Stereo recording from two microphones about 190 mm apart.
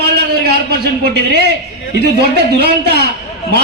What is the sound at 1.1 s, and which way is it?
Speech, 60° right (ahead or behind).